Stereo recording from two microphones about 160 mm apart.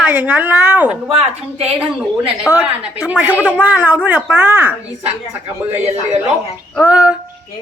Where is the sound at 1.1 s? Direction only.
40° right (ahead or behind).